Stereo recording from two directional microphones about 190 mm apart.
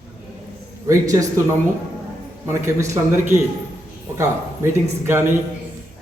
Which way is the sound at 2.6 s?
15° right (ahead or behind).